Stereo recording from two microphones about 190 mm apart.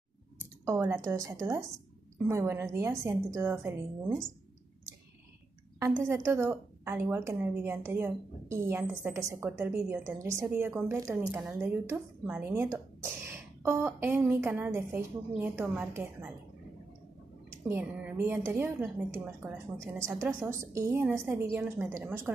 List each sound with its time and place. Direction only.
0.7 s a woman's voice: 15° right (ahead or behind)
5.8 s a woman's voice: 15° right (ahead or behind)
17.6 s a woman's voice: 10° right (ahead or behind)